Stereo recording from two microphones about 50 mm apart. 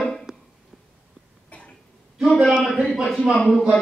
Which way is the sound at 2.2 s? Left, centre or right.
Centre.